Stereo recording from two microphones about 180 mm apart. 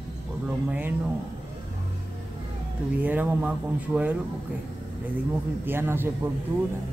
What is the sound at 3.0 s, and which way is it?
Speech, 10° right (ahead or behind).